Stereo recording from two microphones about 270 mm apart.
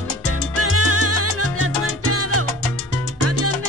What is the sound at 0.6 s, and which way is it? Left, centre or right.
Salsa music, right.